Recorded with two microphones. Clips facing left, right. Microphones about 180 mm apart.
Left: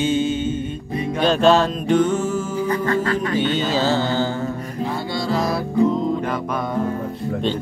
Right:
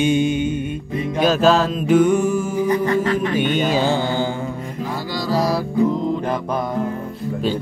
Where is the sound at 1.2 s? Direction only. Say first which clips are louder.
Even; 5° right (ahead or behind).